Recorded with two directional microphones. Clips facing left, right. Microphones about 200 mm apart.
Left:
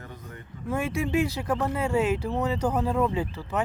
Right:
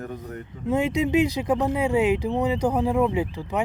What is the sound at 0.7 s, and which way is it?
Speech, 20° right (ahead or behind).